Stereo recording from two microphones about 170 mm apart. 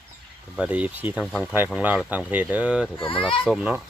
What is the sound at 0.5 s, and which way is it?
Speech, 10° right (ahead or behind).